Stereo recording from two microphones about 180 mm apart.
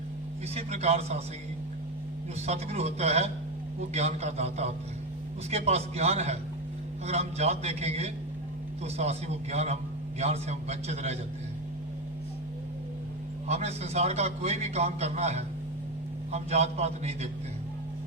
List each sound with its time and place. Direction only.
0.5 s a man's voice: 35° right (ahead or behind)
2.5 s a man's voice: 35° right (ahead or behind)
13.5 s a man's voice: 35° right (ahead or behind)